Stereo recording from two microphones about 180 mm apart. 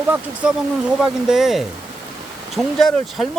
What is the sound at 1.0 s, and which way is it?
Speech, centre (ahead or behind).